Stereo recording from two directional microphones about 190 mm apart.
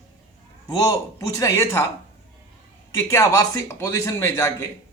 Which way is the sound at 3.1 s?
15° left (ahead or behind).